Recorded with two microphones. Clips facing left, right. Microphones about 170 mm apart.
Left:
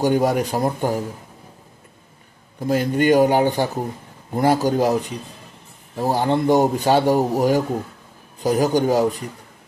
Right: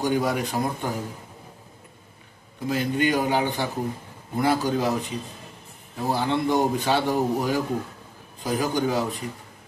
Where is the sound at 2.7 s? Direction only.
40° left (ahead or behind).